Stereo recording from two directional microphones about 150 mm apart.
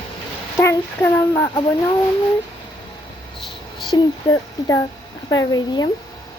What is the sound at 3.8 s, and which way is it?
Speech, 25° left (ahead or behind).